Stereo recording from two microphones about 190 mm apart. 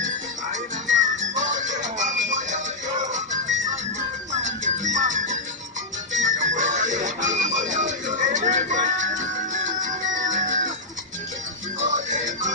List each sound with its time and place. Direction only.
0.8 s music: 40° right (ahead or behind)
4.3 s music: 40° right (ahead or behind)
11.9 s music: 40° right (ahead or behind)